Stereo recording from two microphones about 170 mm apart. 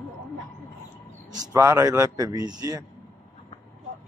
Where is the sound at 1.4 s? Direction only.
20° right (ahead or behind).